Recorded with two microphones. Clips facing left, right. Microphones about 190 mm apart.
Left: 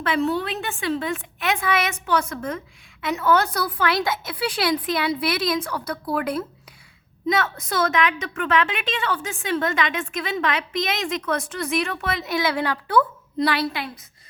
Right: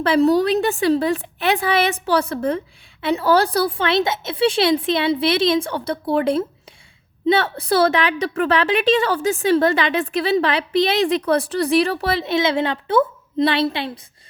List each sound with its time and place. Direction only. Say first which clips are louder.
0.0 s a woman's voice: right 8 dB; 35° right (ahead or behind)